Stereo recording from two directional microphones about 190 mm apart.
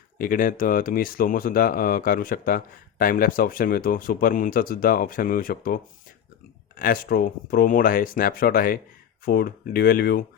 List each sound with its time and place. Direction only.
0.2 s speech: 45° left (ahead or behind)